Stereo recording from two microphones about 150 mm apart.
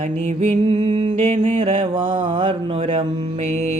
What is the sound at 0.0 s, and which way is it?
Music, 50° right (ahead or behind).